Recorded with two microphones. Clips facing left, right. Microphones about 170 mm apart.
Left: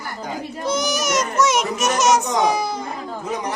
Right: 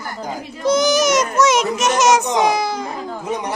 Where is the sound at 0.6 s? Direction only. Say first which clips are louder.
Right 8 dB; 90° right.